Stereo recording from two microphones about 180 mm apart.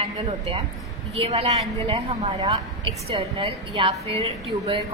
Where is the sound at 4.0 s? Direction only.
35° right (ahead or behind).